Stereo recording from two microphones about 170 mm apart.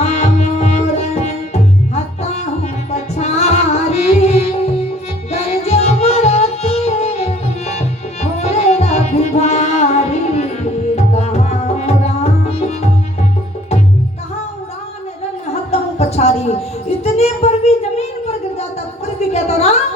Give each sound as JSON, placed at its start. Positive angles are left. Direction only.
{"t": 0.0, "sound": "music", "side_deg": 40}
{"t": 2.9, "sound": "music", "side_deg": 40}
{"t": 15.7, "sound": "music", "side_deg": 40}
{"t": 17.0, "sound": "a sound", "side_deg": 40}